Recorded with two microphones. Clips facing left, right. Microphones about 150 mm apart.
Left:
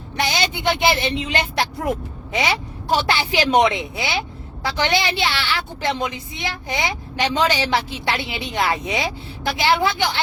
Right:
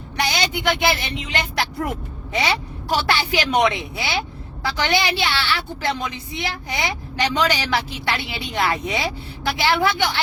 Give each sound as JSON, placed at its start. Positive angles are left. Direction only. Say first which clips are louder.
{"t": 0.2, "sound": "a woman's voice", "louder": "even", "side_deg": 25}